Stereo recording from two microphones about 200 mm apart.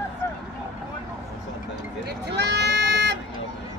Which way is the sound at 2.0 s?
55° right (ahead or behind).